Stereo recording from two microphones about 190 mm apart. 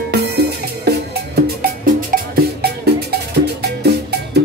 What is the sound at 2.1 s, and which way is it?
Music, 55° right (ahead or behind).